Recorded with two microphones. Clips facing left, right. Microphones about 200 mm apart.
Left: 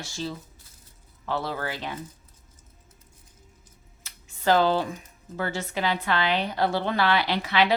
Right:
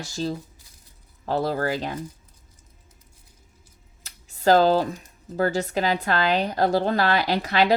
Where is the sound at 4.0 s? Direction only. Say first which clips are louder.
Right 6 dB; 40° right (ahead or behind).